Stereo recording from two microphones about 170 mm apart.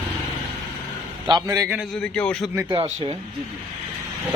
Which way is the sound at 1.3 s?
25° right (ahead or behind).